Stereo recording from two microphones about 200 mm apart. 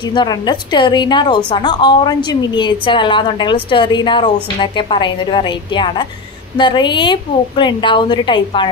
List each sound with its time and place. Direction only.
0.1 s a woman's voice: 20° left (ahead or behind)